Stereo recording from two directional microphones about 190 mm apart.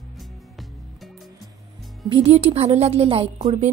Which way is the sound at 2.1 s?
30° right (ahead or behind).